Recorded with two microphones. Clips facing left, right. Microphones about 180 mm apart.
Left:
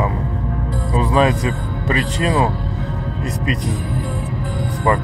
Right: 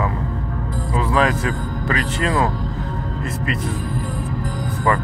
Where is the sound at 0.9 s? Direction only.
20° left (ahead or behind).